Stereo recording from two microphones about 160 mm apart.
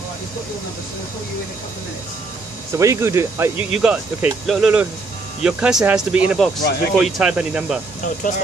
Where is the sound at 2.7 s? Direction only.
20° right (ahead or behind).